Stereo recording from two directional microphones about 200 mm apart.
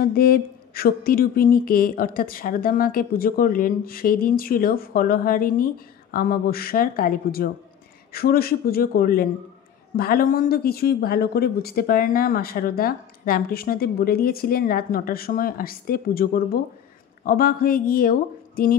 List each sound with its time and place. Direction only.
0.0 s speech: 50° left (ahead or behind)